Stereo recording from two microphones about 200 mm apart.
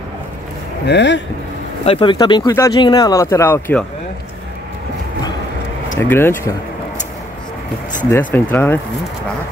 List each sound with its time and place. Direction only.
0.8 s speech: 60° left (ahead or behind)
1.9 s speech: 25° left (ahead or behind)
5.9 s speech: 10° left (ahead or behind)
8.0 s speech: 5° left (ahead or behind)